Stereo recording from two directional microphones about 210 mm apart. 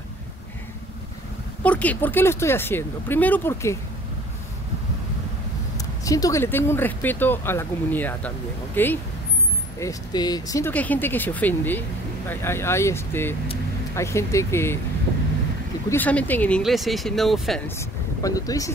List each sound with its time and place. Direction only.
1.6 s speech: 5° left (ahead or behind)
5.8 s speech: 15° left (ahead or behind)
15.9 s speech: 5° left (ahead or behind)
17.7 s speech: 15° left (ahead or behind)